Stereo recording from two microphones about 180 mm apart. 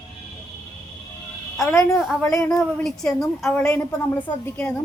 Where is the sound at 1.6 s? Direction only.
15° left (ahead or behind).